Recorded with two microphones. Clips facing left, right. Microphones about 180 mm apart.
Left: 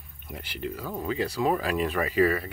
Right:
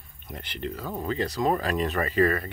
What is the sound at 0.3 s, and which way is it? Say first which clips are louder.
Speech: even; 5° left (ahead or behind).